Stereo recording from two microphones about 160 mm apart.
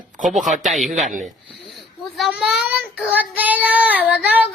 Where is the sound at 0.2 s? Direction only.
50° right (ahead or behind).